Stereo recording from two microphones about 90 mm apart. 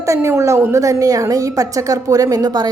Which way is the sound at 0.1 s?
30° right (ahead or behind).